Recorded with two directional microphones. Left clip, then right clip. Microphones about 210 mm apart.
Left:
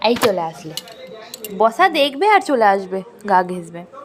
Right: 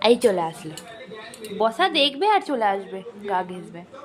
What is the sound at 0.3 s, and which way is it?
A woman's voice, centre (ahead or behind).